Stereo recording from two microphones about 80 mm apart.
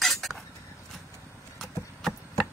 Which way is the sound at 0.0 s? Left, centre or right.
Centre.